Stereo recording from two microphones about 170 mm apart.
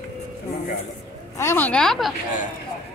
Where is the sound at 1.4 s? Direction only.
10° left (ahead or behind).